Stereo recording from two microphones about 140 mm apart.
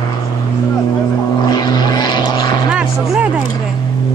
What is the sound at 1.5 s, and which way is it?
Vehicle, 30° left (ahead or behind).